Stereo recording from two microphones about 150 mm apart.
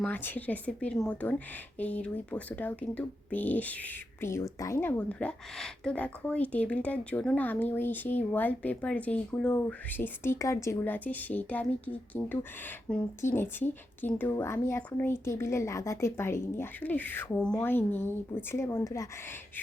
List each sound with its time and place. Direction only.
0.0 s speech: 10° left (ahead or behind)